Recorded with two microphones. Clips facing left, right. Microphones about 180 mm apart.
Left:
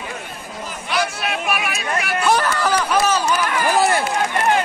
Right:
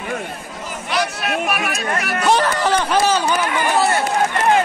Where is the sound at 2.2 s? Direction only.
25° right (ahead or behind).